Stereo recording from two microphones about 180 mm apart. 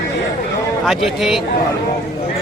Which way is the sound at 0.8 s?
Centre (ahead or behind).